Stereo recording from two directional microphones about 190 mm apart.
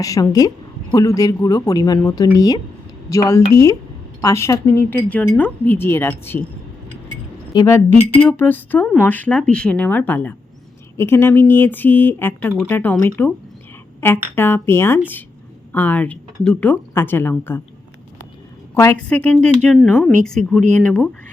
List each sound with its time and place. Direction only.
0.0 s speech: 20° left (ahead or behind)
7.5 s speech: 15° left (ahead or behind)
18.7 s speech: 10° left (ahead or behind)